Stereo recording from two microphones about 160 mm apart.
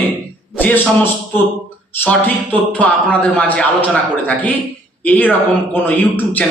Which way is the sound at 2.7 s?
10° left (ahead or behind).